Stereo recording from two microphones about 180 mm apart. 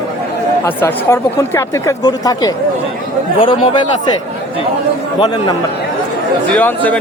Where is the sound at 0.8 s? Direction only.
15° left (ahead or behind).